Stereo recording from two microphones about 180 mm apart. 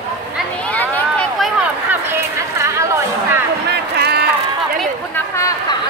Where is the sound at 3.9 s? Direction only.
60° right (ahead or behind).